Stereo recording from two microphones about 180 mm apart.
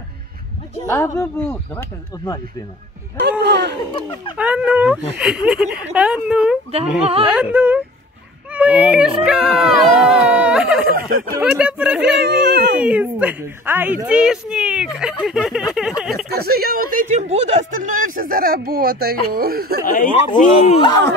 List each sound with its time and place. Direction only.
0.8 s speech: 15° left (ahead or behind)
3.2 s a sound: 70° right (ahead or behind)
3.7 s speech: 25° left (ahead or behind)
4.4 s speech: 5° right (ahead or behind)
8.5 s a sound: 5° right (ahead or behind)
11.0 s speech: 50° right (ahead or behind)
11.4 s speech: 5° right (ahead or behind)
12.3 s dog: 75° right (ahead or behind)
12.8 s speech: 5° right (ahead or behind)
15.2 s a sound: centre (ahead or behind)
16.3 s speech: 60° right (ahead or behind)
20.3 s speech: 45° left (ahead or behind)
20.7 s speech: 25° left (ahead or behind)